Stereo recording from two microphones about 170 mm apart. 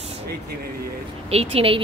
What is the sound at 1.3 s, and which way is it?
Speech, 35° right (ahead or behind).